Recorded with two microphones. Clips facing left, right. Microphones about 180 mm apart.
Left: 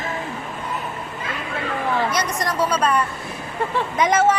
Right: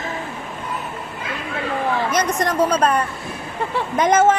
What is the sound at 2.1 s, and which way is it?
A woman's voice, 45° right (ahead or behind).